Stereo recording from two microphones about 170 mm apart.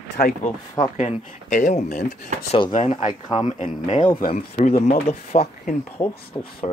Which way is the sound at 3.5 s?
45° left (ahead or behind).